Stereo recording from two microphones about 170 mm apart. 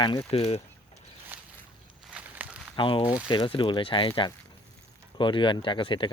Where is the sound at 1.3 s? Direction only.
10° right (ahead or behind).